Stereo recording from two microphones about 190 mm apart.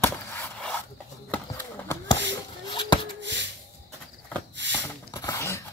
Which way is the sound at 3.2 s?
70° right (ahead or behind).